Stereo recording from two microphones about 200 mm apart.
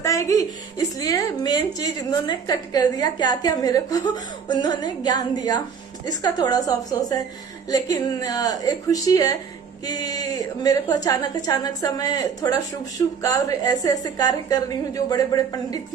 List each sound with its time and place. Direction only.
0.0 s music: 15° left (ahead or behind)
0.9 s a woman's voice: 15° left (ahead or behind)